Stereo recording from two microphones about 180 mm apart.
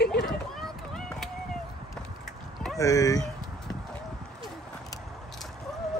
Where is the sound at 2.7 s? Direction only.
20° left (ahead or behind).